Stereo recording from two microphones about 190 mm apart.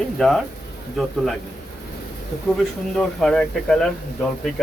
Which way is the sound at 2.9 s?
5° left (ahead or behind).